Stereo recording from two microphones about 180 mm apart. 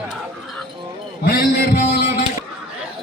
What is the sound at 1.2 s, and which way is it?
Music, 55° left (ahead or behind).